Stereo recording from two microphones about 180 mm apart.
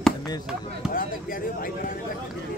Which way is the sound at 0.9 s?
50° left (ahead or behind).